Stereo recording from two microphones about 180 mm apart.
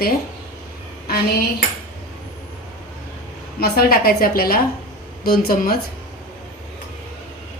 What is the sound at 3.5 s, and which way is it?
A woman's voice, 60° left (ahead or behind).